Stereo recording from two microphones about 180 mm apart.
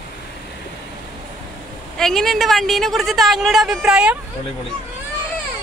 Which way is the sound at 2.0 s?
Centre (ahead or behind).